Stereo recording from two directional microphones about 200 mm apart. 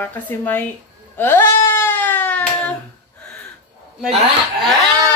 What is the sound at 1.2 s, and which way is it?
Hands, 10° left (ahead or behind).